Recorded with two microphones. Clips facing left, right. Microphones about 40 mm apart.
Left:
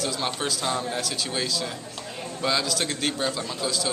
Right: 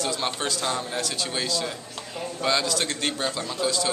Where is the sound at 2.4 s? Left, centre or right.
Centre.